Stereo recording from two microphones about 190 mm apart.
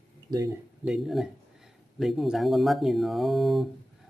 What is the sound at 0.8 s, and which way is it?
Speech, centre (ahead or behind).